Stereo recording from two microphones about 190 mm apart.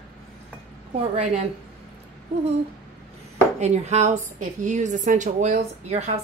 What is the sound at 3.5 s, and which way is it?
A woman's voice, 35° right (ahead or behind).